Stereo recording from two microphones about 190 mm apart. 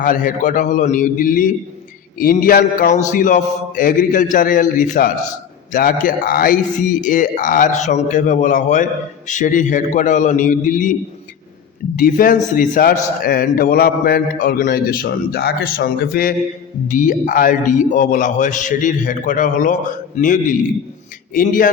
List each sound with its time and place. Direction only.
0.0 s a man's voice: 45° left (ahead or behind)
11.9 s a man's voice: 50° left (ahead or behind)